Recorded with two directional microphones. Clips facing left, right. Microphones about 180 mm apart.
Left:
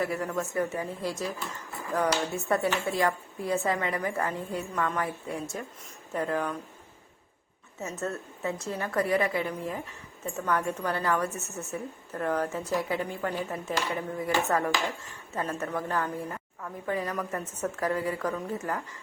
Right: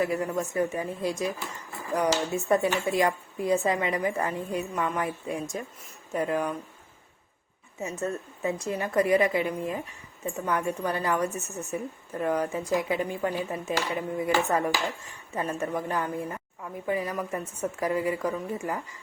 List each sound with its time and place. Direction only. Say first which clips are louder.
0.0 s a woman's voice: right 3 dB; 20° right (ahead or behind)
8.0 s a woman's voice: right 3 dB; 15° right (ahead or behind)